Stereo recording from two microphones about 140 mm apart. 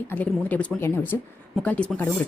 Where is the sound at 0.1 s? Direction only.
10° left (ahead or behind).